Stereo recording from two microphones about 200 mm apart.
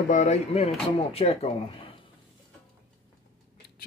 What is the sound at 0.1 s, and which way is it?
Speech, 35° left (ahead or behind).